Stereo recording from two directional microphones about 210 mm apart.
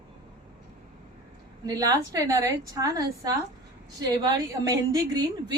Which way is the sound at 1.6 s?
15° right (ahead or behind).